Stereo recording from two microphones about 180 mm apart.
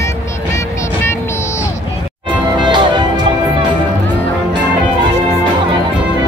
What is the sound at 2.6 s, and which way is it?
Music, 25° right (ahead or behind).